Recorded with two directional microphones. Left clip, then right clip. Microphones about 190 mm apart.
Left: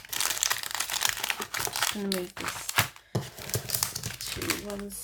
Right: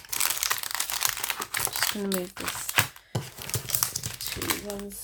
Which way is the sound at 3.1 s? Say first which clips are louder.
Even; 15° right (ahead or behind).